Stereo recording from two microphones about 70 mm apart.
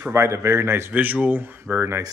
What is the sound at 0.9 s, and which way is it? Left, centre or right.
Speech, right.